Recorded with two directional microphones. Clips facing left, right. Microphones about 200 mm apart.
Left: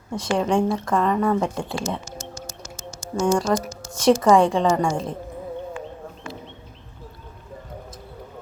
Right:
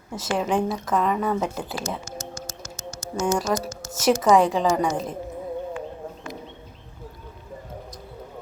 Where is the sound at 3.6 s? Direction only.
20° right (ahead or behind).